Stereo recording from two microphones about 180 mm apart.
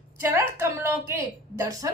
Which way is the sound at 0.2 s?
15° right (ahead or behind).